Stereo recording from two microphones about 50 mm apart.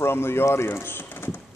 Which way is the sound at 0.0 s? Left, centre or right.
Left.